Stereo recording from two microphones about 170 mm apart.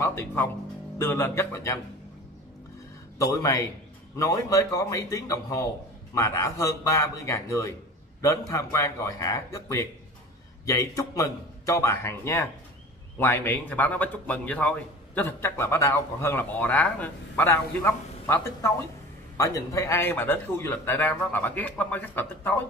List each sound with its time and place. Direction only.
0.0 s a man's voice: 15° left (ahead or behind)
3.2 s a man's voice: 20° left (ahead or behind)